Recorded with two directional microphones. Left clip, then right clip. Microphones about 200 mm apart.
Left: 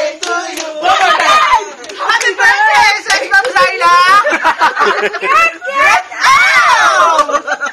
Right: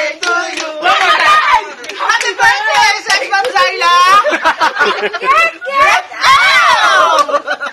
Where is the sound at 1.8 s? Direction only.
5° right (ahead or behind).